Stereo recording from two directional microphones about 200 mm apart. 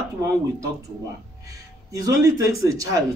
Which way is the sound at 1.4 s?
15° right (ahead or behind).